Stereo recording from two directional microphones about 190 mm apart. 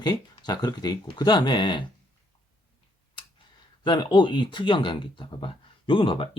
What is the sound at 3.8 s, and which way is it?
Speech, 25° left (ahead or behind).